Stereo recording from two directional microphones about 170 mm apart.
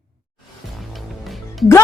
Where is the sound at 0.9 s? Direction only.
Centre (ahead or behind).